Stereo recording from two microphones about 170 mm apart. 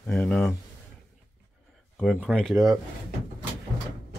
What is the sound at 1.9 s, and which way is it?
Speech, centre (ahead or behind).